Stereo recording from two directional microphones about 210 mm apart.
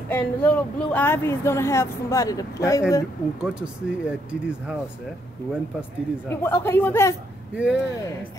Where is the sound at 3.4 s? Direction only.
5° right (ahead or behind).